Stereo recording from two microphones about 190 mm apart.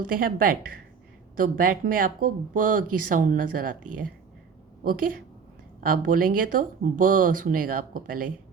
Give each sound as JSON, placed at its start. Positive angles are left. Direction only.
{"t": 0.0, "sound": "speech", "side_deg": -50}